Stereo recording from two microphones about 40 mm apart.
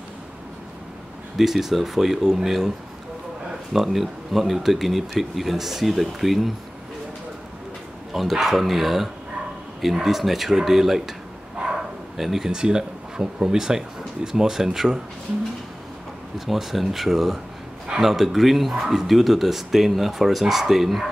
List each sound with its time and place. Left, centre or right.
1.4 s speech: centre
3.7 s speech: centre
8.1 s speech: centre
12.2 s speech: centre
16.3 s speech: centre